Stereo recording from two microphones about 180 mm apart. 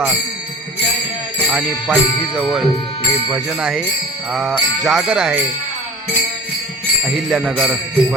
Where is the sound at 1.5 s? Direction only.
5° right (ahead or behind).